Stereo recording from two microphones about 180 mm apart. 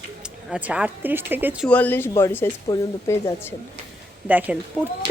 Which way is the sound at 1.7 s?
10° left (ahead or behind).